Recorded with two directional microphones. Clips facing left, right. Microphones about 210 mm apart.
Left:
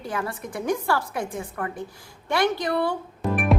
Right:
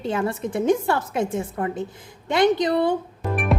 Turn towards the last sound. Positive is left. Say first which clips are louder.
# left 1 dB
turn(degrees=0)  # may be behind; listen again after turning